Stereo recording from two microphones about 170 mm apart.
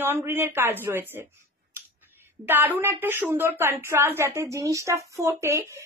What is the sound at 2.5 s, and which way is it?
A woman's voice, 10° right (ahead or behind).